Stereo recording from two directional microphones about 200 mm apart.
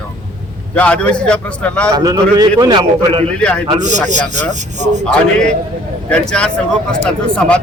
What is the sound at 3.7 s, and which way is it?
Speech, 35° right (ahead or behind).